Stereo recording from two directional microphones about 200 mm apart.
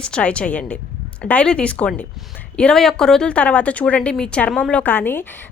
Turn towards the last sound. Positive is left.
turn(degrees=10)  # may be behind; listen again after turning